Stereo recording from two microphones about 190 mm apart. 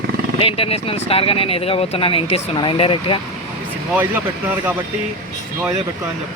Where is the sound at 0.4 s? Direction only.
30° left (ahead or behind).